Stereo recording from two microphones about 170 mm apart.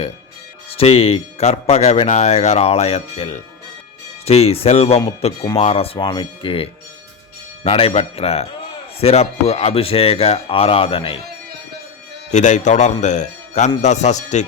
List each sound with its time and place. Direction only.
0.8 s speech: 35° left (ahead or behind)
12.3 s a man's voice: 45° left (ahead or behind)